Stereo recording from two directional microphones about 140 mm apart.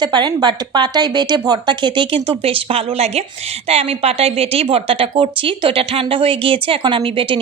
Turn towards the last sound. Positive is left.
turn(degrees=-40)  # may be behind; listen again after turning